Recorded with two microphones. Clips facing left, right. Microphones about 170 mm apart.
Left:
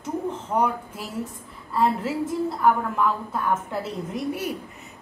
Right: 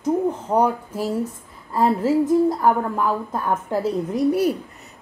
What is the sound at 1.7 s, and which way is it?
Speech, 40° right (ahead or behind).